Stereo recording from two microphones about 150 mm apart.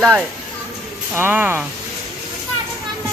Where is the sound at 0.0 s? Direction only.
10° right (ahead or behind).